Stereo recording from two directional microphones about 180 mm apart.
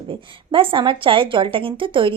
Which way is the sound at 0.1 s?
30° right (ahead or behind).